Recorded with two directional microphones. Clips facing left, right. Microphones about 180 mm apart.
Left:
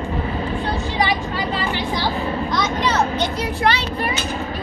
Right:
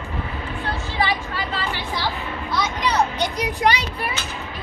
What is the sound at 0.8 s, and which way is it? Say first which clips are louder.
Vehicle: left 3 dB; 15° left (ahead or behind).